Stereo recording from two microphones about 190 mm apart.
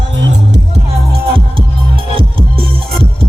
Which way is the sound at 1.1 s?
30° right (ahead or behind).